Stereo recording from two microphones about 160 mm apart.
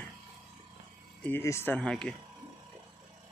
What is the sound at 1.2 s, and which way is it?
Speech, 15° left (ahead or behind).